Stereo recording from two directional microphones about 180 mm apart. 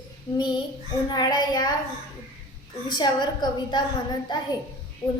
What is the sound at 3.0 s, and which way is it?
Speech, 25° left (ahead or behind).